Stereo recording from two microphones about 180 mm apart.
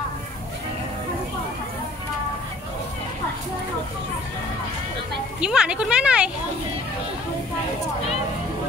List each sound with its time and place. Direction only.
5.4 s speech: 5° right (ahead or behind)